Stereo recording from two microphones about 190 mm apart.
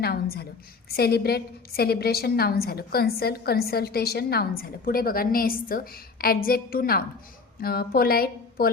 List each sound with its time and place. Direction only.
0.0 s a woman's voice: 55° left (ahead or behind)